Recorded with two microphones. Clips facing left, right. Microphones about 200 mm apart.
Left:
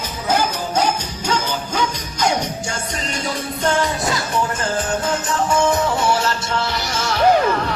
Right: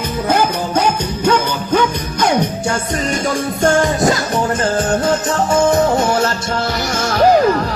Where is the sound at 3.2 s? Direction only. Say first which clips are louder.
Right 5 dB; 45° right (ahead or behind).